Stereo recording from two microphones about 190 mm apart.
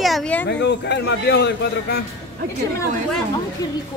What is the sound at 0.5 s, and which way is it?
A man's voice, 65° left (ahead or behind).